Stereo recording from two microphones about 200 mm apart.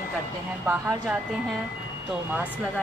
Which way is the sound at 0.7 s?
10° right (ahead or behind).